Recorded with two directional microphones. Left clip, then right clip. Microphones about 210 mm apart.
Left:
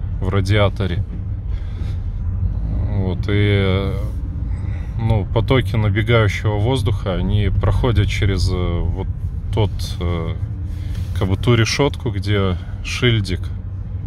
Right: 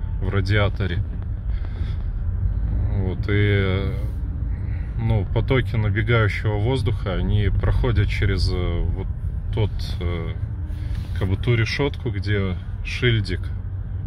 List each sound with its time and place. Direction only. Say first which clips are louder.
0.2 s speech: left 5 dB; 10° left (ahead or behind)
2.9 s speech: left 3 dB; 10° left (ahead or behind)
12.0 s speech: left 5 dB; 15° left (ahead or behind)